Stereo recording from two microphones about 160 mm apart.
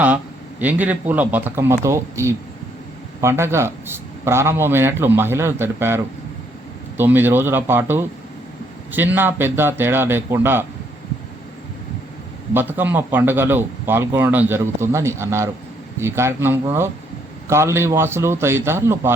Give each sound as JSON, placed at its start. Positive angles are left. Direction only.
{"t": 0.6, "sound": "a man's voice", "side_deg": -10}
{"t": 12.5, "sound": "a man's voice", "side_deg": -10}